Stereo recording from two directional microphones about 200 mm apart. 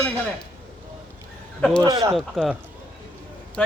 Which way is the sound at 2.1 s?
Centre (ahead or behind).